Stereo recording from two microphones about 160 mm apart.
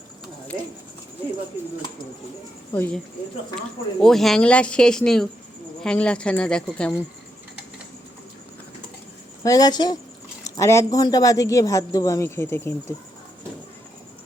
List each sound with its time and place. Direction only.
2.7 s speech: 10° left (ahead or behind)
4.0 s speech: centre (ahead or behind)
9.4 s speech: 20° left (ahead or behind)